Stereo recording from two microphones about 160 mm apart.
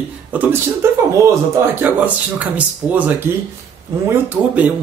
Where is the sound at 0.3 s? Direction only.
10° right (ahead or behind).